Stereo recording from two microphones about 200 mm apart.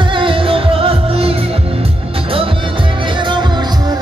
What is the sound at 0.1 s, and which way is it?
Music, 25° right (ahead or behind).